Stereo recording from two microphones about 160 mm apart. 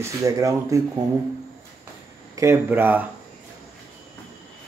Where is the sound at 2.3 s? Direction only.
15° right (ahead or behind).